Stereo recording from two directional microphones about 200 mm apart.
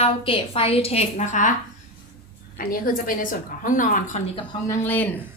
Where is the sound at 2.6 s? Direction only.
45° left (ahead or behind).